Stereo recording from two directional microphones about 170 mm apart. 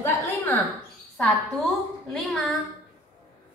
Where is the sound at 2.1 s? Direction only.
Centre (ahead or behind).